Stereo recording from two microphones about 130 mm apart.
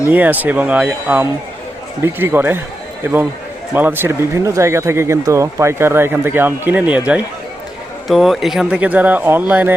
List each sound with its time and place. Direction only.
0.1 s speech: 15° right (ahead or behind)
8.0 s speech: centre (ahead or behind)